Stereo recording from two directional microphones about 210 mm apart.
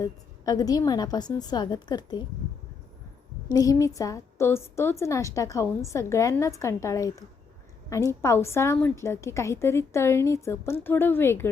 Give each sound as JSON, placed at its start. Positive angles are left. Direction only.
{"t": 0.0, "sound": "a woman's voice", "side_deg": 15}
{"t": 3.5, "sound": "a woman's voice", "side_deg": 15}